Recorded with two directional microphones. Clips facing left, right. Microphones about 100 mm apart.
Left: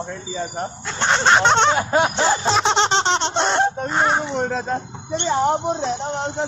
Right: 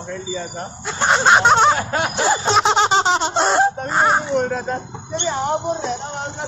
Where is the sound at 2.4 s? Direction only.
Centre (ahead or behind).